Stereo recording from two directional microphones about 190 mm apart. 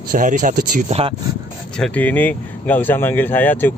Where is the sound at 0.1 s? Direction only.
45° right (ahead or behind).